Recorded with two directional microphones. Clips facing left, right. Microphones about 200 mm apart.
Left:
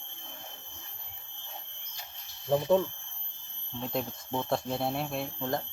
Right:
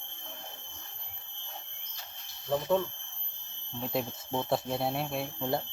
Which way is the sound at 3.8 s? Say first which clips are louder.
Right 1 dB; 5° right (ahead or behind).